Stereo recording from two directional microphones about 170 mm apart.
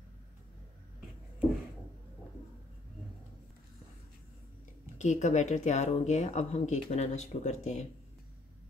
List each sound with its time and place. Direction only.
4.9 s speech: 45° left (ahead or behind)